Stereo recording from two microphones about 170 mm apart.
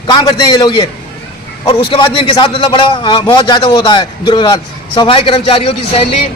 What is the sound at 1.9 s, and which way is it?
A man's voice, 30° left (ahead or behind).